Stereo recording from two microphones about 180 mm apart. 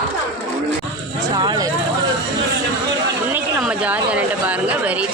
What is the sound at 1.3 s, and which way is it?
Speech, 25° right (ahead or behind).